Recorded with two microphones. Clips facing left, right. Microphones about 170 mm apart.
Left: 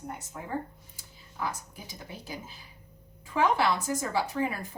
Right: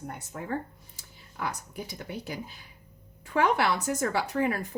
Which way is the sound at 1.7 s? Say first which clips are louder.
Right 7 dB; 65° right (ahead or behind).